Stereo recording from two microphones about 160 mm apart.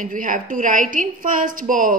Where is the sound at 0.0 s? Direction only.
55° right (ahead or behind).